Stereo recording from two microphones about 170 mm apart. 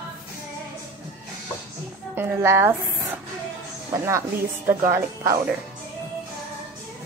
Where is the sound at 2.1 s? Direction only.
15° right (ahead or behind).